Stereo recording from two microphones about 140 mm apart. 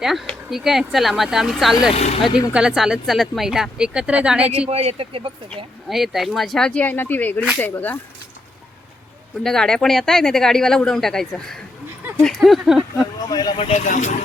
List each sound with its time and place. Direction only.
0.0 s speech: centre (ahead or behind)
1.9 s speech: 55° left (ahead or behind)
2.5 s speech: 5° right (ahead or behind)
4.7 s speech: 45° right (ahead or behind)
5.9 s speech: centre (ahead or behind)
9.4 s speech: 5° left (ahead or behind)
13.2 s speech: 30° left (ahead or behind)
13.6 s speech: 45° left (ahead or behind)
13.8 s speech: 60° left (ahead or behind)